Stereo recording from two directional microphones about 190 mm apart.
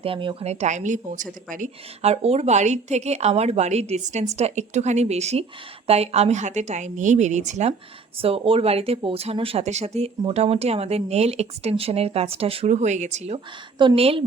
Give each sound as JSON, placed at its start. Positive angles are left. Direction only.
{"t": 0.0, "sound": "speech", "side_deg": -25}